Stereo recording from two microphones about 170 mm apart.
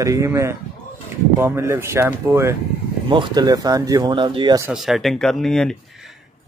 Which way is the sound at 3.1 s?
25° right (ahead or behind).